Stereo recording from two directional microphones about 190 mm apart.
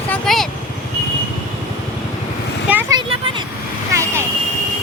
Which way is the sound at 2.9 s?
25° right (ahead or behind).